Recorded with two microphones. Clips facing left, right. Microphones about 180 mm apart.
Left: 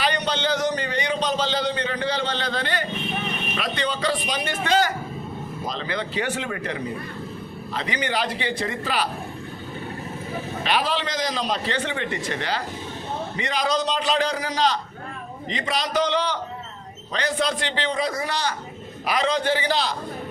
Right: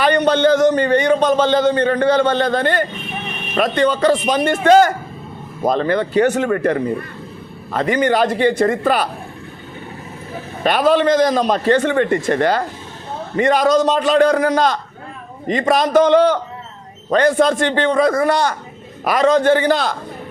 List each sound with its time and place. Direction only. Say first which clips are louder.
0.0 s a man's voice: right 11 dB; 55° right (ahead or behind)
10.6 s a man's voice: right 11 dB; 50° right (ahead or behind)